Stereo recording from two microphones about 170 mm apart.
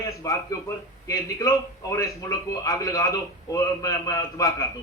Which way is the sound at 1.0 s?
20° left (ahead or behind).